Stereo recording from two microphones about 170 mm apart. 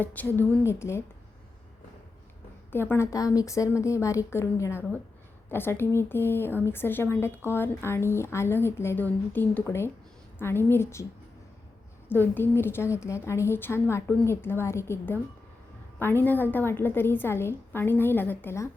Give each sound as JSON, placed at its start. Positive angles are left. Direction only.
{"t": 0.0, "sound": "a woman's voice", "side_deg": 10}
{"t": 2.7, "sound": "a woman's voice", "side_deg": 15}
{"t": 12.2, "sound": "a woman's voice", "side_deg": 10}